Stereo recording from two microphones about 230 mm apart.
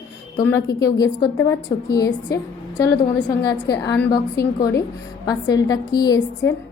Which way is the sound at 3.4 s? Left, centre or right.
Centre.